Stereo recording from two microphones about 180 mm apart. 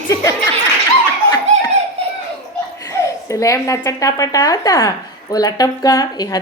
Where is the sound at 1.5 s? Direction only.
40° right (ahead or behind).